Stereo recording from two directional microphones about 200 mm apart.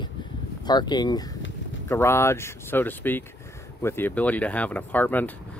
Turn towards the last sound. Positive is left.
turn(degrees=10)  # may be behind; listen again after turning